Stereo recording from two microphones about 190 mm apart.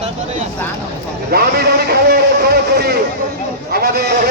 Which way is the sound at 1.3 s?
55° right (ahead or behind).